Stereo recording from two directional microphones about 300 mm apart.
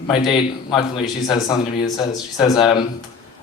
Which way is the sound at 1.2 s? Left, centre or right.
Centre.